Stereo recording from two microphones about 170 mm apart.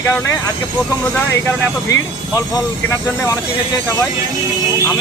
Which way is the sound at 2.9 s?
15° left (ahead or behind).